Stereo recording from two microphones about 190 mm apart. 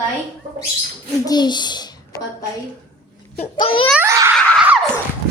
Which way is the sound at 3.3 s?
30° left (ahead or behind).